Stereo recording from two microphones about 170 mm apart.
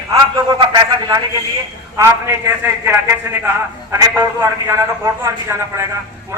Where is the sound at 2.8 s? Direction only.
10° right (ahead or behind).